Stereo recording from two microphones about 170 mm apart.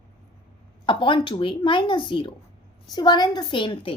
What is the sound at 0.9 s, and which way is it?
Speech, 30° left (ahead or behind).